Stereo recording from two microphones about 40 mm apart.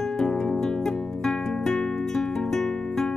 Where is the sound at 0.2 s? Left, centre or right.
Centre.